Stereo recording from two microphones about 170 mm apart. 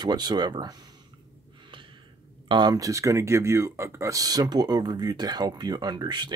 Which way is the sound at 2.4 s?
25° right (ahead or behind).